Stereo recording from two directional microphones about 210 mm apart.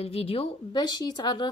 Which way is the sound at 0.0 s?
25° left (ahead or behind).